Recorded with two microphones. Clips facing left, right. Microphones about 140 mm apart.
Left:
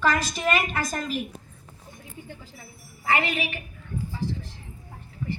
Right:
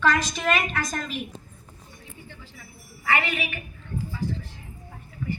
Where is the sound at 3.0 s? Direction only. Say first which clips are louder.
Left 1 dB; 35° left (ahead or behind).